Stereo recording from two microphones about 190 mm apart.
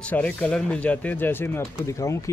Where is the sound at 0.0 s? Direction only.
5° left (ahead or behind).